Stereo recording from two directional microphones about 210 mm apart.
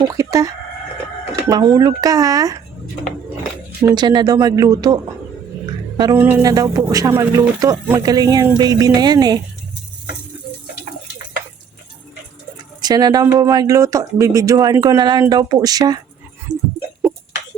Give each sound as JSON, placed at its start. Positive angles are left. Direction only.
{"t": 0.0, "sound": "speech", "side_deg": -15}
{"t": 3.8, "sound": "speech", "side_deg": -20}
{"t": 6.0, "sound": "speech", "side_deg": -20}
{"t": 12.8, "sound": "speech", "side_deg": -20}
{"t": 16.5, "sound": "music", "side_deg": -20}